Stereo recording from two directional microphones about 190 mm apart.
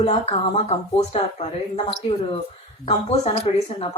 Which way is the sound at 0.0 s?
30° left (ahead or behind).